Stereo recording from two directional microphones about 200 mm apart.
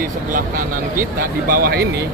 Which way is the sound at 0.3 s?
45° right (ahead or behind).